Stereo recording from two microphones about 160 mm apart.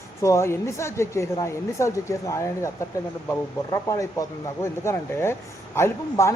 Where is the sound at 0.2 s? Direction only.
15° left (ahead or behind).